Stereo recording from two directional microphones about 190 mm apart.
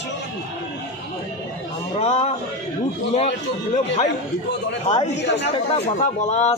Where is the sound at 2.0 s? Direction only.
35° left (ahead or behind).